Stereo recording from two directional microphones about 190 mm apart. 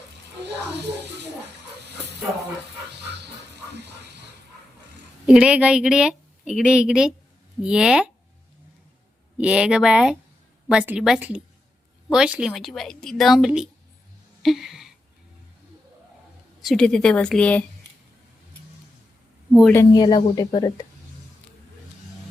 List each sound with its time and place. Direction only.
0.4 s speech: 65° right (ahead or behind)
5.2 s a woman's voice: 5° right (ahead or behind)
9.4 s a woman's voice: 5° right (ahead or behind)
14.4 s a sound: centre (ahead or behind)
16.6 s a woman's voice: 5° left (ahead or behind)
19.5 s speech: 5° right (ahead or behind)
19.7 s speech: 20° left (ahead or behind)